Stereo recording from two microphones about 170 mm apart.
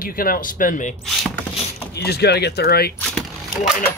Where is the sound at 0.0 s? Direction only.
55° left (ahead or behind).